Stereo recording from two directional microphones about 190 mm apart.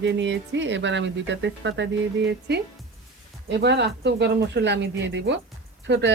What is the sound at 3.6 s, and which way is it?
Speech, 65° right (ahead or behind).